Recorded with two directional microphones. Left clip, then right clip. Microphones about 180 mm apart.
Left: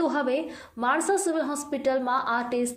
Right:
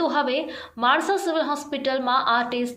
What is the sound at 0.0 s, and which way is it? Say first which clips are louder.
A woman's voice: right 3 dB; 45° left (ahead or behind).